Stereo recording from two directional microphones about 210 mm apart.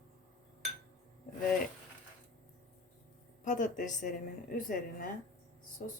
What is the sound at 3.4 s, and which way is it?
Speech, 35° left (ahead or behind).